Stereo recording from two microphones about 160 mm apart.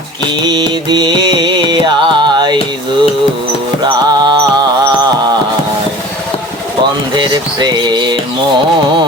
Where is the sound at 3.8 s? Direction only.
25° right (ahead or behind).